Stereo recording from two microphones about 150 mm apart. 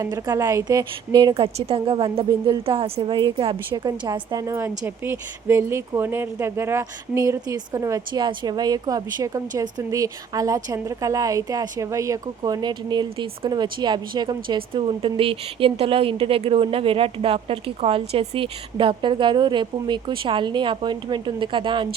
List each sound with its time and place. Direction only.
0.0 s a woman's voice: 20° right (ahead or behind)